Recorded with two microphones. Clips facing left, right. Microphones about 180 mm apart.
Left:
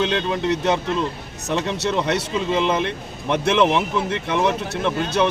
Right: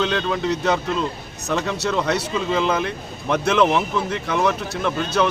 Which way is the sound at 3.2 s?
20° left (ahead or behind).